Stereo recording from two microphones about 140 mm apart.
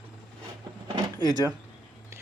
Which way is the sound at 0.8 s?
30° right (ahead or behind).